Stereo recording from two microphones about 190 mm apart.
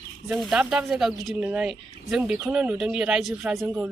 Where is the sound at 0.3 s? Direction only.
5° right (ahead or behind).